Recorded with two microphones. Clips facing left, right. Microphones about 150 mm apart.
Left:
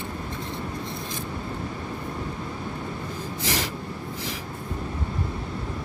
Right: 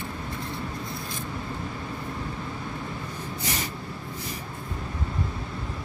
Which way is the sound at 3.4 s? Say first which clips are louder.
Left 5 dB; 90° left.